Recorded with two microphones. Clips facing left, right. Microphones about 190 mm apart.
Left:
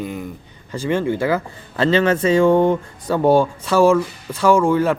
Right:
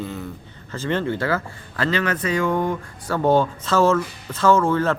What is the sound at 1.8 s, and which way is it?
Speech, 25° left (ahead or behind).